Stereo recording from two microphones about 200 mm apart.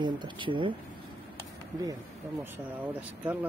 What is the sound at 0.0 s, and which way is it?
Speech, 25° right (ahead or behind).